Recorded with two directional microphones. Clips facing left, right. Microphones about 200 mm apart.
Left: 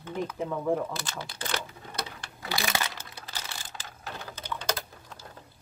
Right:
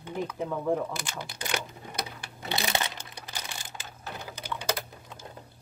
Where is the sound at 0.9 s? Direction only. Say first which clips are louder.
Even; 15° right (ahead or behind).